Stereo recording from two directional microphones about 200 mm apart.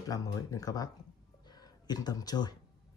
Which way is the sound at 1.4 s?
20° left (ahead or behind).